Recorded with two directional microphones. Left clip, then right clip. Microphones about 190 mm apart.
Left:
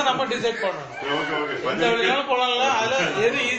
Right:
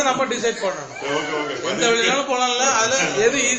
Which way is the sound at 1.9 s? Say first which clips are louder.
Right 2 dB; 25° right (ahead or behind).